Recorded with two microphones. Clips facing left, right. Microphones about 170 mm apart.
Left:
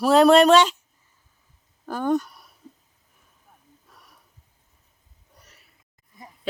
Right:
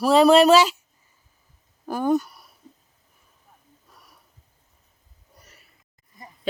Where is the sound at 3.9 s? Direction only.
Centre (ahead or behind).